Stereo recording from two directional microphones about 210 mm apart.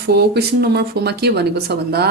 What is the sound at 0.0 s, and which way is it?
Speech, 50° right (ahead or behind).